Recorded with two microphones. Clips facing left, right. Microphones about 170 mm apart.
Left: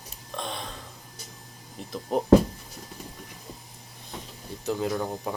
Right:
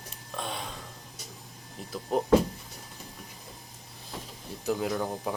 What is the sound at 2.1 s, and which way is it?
Speech, centre (ahead or behind).